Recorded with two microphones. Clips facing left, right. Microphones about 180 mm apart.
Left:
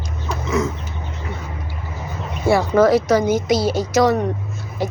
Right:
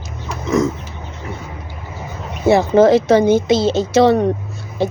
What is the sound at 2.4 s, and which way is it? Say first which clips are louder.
Speech: right 4 dB; 25° right (ahead or behind).